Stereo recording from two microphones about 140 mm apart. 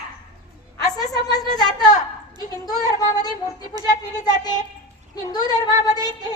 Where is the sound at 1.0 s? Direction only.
25° left (ahead or behind).